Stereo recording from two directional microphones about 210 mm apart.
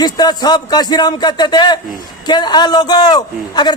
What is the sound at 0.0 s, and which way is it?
A man's voice, 20° left (ahead or behind).